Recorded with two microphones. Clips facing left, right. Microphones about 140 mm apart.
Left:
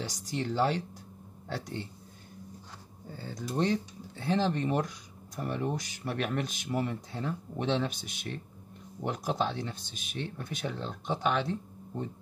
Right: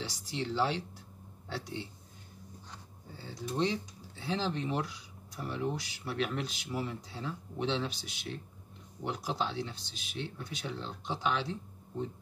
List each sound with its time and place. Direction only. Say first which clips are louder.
0.0 s speech: left 3 dB; 45° left (ahead or behind)
3.2 s speech: left 2 dB; 50° left (ahead or behind)